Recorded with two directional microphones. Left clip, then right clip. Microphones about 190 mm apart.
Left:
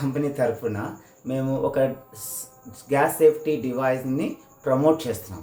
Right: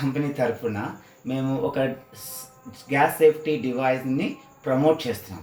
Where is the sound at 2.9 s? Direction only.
20° left (ahead or behind).